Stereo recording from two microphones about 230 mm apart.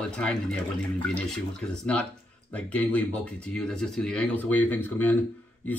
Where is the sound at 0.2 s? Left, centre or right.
Centre.